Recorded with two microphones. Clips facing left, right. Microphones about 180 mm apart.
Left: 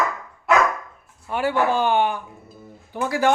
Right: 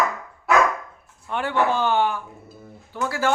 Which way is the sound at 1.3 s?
5° left (ahead or behind).